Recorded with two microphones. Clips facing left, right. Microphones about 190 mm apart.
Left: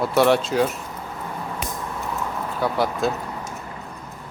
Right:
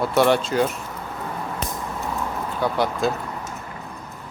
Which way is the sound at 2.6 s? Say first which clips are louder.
Even; centre (ahead or behind).